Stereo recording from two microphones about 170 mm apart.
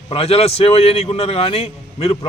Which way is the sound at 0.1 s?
35° left (ahead or behind).